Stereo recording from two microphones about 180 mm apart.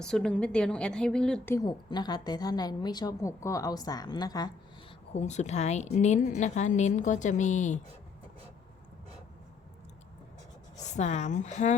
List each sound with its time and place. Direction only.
0.0 s a woman's voice: 5° left (ahead or behind)
1.5 s a woman's voice: 20° left (ahead or behind)
5.1 s a woman's voice: 40° left (ahead or behind)
10.8 s a woman's voice: 40° left (ahead or behind)